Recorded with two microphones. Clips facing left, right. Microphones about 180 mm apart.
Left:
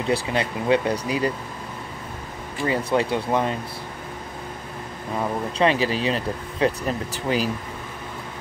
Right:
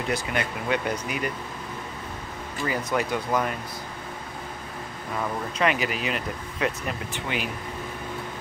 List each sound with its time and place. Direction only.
0.1 s speech: 30° left (ahead or behind)
2.6 s speech: 30° left (ahead or behind)
5.6 s speech: 30° left (ahead or behind)